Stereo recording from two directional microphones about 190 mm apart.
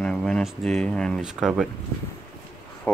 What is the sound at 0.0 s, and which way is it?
Speech, 5° left (ahead or behind).